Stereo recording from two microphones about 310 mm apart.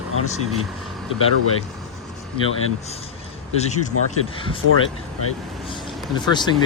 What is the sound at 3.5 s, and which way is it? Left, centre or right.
Speech, left.